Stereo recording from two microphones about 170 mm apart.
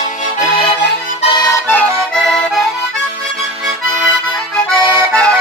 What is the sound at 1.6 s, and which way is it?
Accordion, 5° left (ahead or behind).